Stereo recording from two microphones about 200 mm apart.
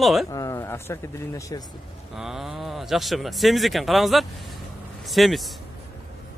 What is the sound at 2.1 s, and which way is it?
Speech, centre (ahead or behind).